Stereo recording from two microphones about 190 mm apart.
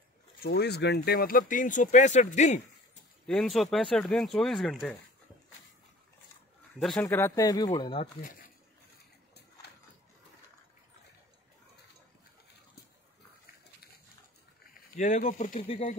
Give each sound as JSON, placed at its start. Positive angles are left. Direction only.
{"t": 0.4, "sound": "speech", "side_deg": 60}
{"t": 3.3, "sound": "speech", "side_deg": 0}
{"t": 6.8, "sound": "speech", "side_deg": 0}
{"t": 7.1, "sound": "speech", "side_deg": 15}
{"t": 15.0, "sound": "speech", "side_deg": 40}